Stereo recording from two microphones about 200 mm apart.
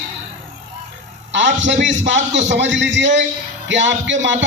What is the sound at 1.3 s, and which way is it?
A man's voice, 65° right (ahead or behind).